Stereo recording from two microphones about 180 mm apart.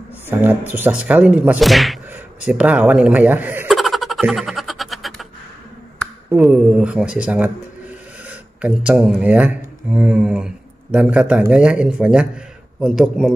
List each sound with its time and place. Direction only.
0.3 s speech: 10° right (ahead or behind)
3.7 s giggle: centre (ahead or behind)
6.3 s speech: 5° right (ahead or behind)
8.5 s speech: 5° right (ahead or behind)